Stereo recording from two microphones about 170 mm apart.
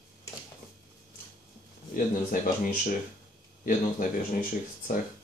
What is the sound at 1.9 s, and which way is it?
Speech, 50° left (ahead or behind).